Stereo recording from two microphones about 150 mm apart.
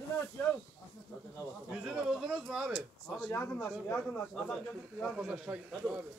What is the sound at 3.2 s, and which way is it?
Speech, 10° left (ahead or behind).